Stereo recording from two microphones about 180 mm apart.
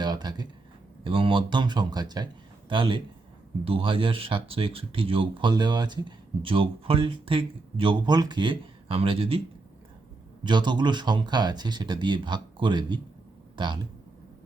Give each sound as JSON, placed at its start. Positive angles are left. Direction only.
{"t": 0.0, "sound": "a sound", "side_deg": -25}
{"t": 1.0, "sound": "speech", "side_deg": -30}
{"t": 10.4, "sound": "speech", "side_deg": -25}